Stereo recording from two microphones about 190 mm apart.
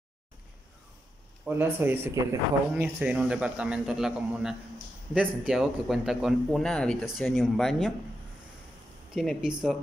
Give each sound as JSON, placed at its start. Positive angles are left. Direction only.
{"t": 1.4, "sound": "a man's voice", "side_deg": -10}
{"t": 9.1, "sound": "a man's voice", "side_deg": 0}